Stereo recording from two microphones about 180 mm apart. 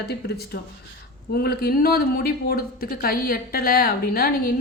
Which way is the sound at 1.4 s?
60° left (ahead or behind).